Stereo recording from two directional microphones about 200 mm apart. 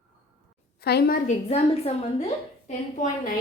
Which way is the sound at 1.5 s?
30° left (ahead or behind).